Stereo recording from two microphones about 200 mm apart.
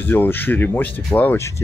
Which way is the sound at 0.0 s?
10° left (ahead or behind).